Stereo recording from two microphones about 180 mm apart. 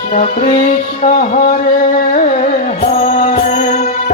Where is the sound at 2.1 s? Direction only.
45° left (ahead or behind).